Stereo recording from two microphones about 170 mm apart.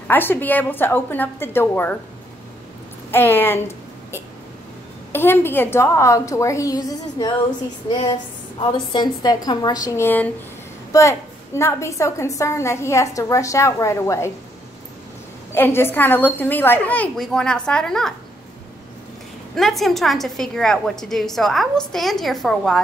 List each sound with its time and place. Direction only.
0.1 s a woman's voice: 10° left (ahead or behind)
3.1 s a woman's voice: 10° left (ahead or behind)
15.5 s a woman's voice: 15° left (ahead or behind)
19.5 s a woman's voice: centre (ahead or behind)